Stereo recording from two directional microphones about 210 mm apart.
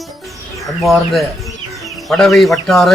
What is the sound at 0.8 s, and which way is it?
Speech, centre (ahead or behind).